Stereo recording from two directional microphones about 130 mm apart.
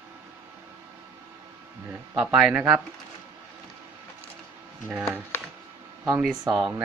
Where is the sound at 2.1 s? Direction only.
5° right (ahead or behind).